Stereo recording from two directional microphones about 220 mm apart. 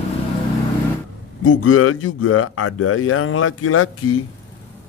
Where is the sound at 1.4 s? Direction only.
70° left (ahead or behind).